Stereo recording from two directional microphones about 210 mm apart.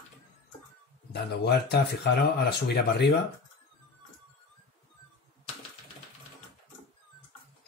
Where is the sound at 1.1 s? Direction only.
50° left (ahead or behind).